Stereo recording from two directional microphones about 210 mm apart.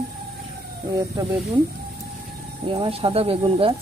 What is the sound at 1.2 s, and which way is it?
Speech, 20° right (ahead or behind).